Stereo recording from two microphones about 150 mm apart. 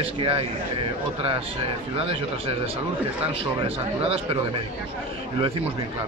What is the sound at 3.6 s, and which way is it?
Speech, 40° right (ahead or behind).